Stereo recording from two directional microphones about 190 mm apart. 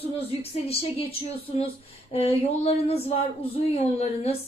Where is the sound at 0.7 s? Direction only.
30° left (ahead or behind).